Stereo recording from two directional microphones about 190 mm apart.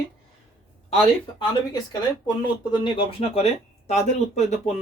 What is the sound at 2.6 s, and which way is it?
Speech, 25° left (ahead or behind).